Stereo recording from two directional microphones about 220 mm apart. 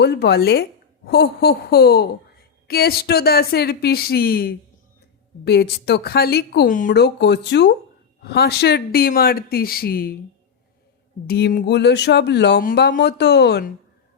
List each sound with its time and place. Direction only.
0.0 s speech: 50° left (ahead or behind)
11.3 s speech: 45° left (ahead or behind)